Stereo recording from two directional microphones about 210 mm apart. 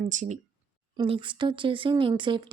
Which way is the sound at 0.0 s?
35° right (ahead or behind).